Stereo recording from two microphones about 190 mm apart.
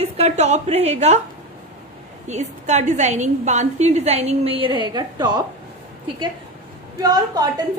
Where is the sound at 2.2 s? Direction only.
35° right (ahead or behind); by 5.4 s 20° right (ahead or behind).